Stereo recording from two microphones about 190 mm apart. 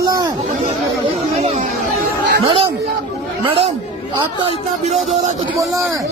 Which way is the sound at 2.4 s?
30° right (ahead or behind).